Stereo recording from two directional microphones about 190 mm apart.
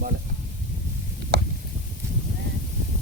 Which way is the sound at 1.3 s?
60° right (ahead or behind).